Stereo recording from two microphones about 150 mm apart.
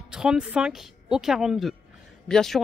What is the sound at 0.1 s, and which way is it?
Speech, 5° right (ahead or behind).